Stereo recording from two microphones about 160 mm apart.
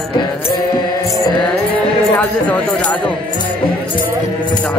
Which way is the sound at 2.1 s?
10° left (ahead or behind).